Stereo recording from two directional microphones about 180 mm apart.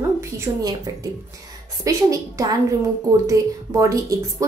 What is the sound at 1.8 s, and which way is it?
A woman's voice, 20° right (ahead or behind).